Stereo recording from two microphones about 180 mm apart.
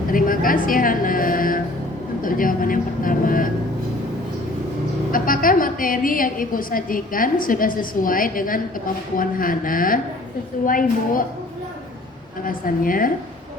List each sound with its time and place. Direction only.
0.1 s a sound: 50° left (ahead or behind)
2.2 s a woman's voice: 50° left (ahead or behind)
5.1 s a woman's voice: 50° left (ahead or behind)
12.5 s a woman's voice: 50° left (ahead or behind)